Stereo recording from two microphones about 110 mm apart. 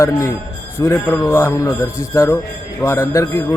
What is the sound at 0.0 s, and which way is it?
Mantra, 25° left (ahead or behind).